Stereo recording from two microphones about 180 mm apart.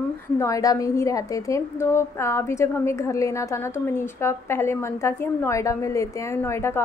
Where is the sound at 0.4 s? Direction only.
20° left (ahead or behind).